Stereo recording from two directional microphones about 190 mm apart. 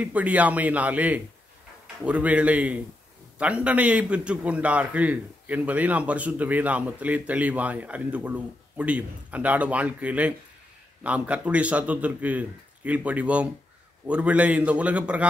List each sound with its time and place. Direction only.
0.0 s a man's voice: 5° right (ahead or behind)